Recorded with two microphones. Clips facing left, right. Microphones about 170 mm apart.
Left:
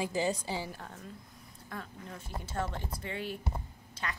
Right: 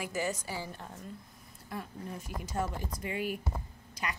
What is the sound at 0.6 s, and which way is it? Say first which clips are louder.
A woman's voice: even; centre (ahead or behind).